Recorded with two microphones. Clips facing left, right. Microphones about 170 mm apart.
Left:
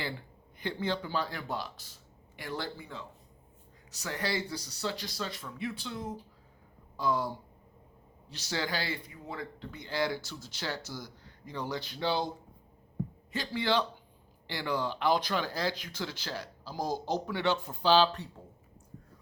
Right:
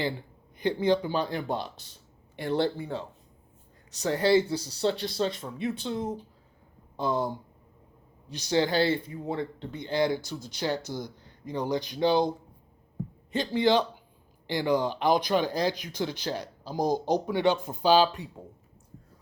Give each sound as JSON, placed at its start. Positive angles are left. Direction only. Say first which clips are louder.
{"t": 0.6, "sound": "speech", "louder": "right 9 dB", "side_deg": -15}
{"t": 6.9, "sound": "a sound", "louder": "right 3 dB", "side_deg": -25}
{"t": 8.3, "sound": "speech", "louder": "right 9 dB", "side_deg": -20}
{"t": 13.3, "sound": "speech", "louder": "right 7 dB", "side_deg": -25}